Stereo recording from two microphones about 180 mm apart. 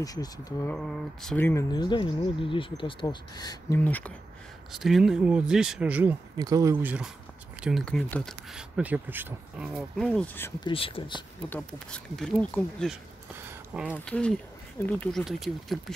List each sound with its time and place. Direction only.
0.0 s speech: 20° left (ahead or behind)
0.7 s speech: centre (ahead or behind); by 3.8 s 20° left (ahead or behind)
3.8 s speech: 10° left (ahead or behind)
4.7 s speech: centre (ahead or behind)
6.3 s speech: 20° right (ahead or behind); by 10.5 s 10° left (ahead or behind)
10.6 s speech: 30° left (ahead or behind)
11.4 s speech: 10° left (ahead or behind)
13.9 s speech: 5° left (ahead or behind)